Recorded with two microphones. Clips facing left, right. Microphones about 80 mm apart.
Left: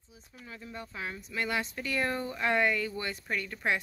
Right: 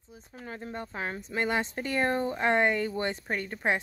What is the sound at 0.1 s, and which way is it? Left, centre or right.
A woman's voice, right.